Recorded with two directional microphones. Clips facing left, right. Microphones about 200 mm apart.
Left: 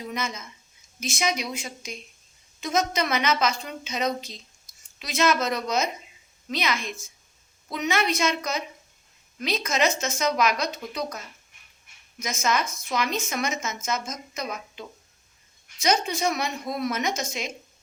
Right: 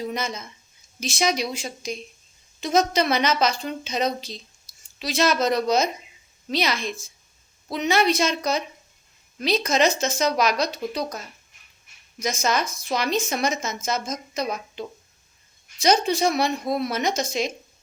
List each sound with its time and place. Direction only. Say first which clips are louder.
0.1 s a woman's voice: right 3 dB; 35° right (ahead or behind)
12.2 s a woman's voice: right 2 dB; 35° right (ahead or behind)